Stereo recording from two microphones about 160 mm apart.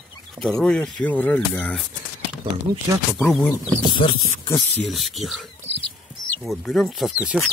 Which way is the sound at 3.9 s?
30° left (ahead or behind).